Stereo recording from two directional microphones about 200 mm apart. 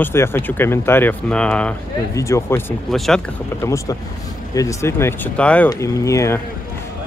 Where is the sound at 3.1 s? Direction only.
5° left (ahead or behind).